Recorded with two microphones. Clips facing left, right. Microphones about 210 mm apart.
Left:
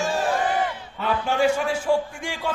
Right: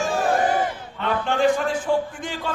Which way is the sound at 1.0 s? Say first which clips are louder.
Right 1 dB; 10° left (ahead or behind).